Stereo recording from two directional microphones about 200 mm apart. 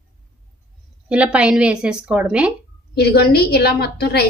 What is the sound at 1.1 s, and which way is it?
A woman's voice, 5° right (ahead or behind).